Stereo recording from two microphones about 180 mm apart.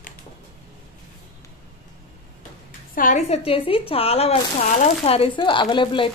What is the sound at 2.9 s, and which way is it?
Speech, 45° left (ahead or behind).